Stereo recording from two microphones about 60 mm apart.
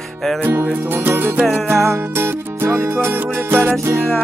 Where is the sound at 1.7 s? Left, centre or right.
Right.